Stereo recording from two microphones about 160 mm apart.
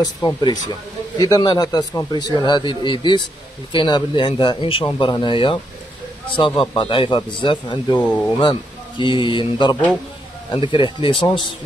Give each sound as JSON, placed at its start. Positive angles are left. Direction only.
{"t": 0.0, "sound": "a man's voice", "side_deg": 25}